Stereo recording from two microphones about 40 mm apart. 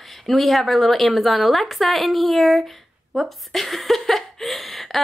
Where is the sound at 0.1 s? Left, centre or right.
Centre.